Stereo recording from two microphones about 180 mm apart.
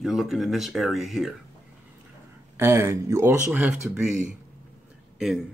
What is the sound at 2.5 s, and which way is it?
Speech, 15° right (ahead or behind).